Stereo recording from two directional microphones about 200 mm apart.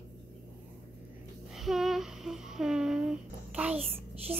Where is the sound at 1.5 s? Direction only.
Centre (ahead or behind).